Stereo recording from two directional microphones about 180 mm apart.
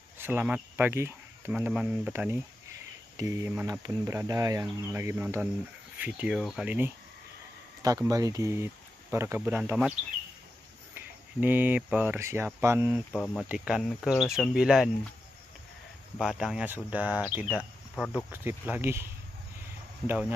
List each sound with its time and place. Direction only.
0.2 s speech: 10° right (ahead or behind)
8.0 s speech: 20° right (ahead or behind)
11.0 s speech: 10° right (ahead or behind)
13.1 s speech: 5° left (ahead or behind)
16.2 s speech: centre (ahead or behind)
20.1 s speech: 10° right (ahead or behind)